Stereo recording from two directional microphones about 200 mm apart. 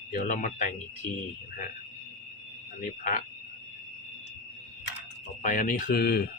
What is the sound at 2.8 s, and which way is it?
Speech, 40° left (ahead or behind).